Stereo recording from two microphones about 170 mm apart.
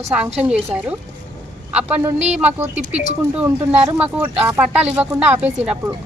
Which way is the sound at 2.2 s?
40° right (ahead or behind).